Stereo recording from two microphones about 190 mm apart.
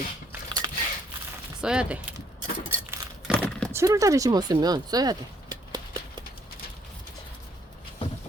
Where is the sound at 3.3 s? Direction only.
10° left (ahead or behind).